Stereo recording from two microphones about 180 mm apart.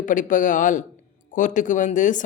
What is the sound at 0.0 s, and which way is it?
Speech, 45° left (ahead or behind).